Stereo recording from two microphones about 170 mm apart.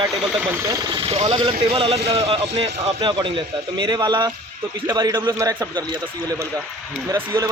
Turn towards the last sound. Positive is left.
turn(degrees=-20)  # may be behind; listen again after turning